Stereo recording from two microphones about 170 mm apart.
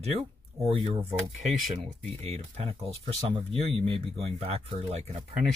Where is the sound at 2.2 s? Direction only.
40° right (ahead or behind).